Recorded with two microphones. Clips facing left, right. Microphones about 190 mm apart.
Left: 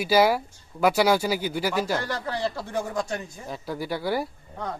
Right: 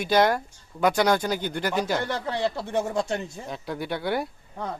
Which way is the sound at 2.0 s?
20° right (ahead or behind).